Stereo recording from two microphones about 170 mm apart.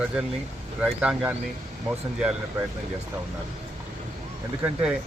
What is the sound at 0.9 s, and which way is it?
Speech, 5° right (ahead or behind).